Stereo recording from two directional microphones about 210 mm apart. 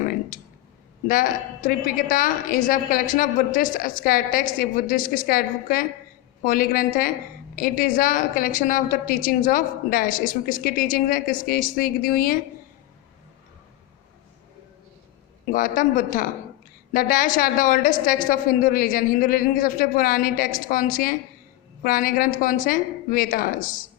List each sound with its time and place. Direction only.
1.0 s a woman's voice: 40° left (ahead or behind)
15.5 s a woman's voice: 40° left (ahead or behind)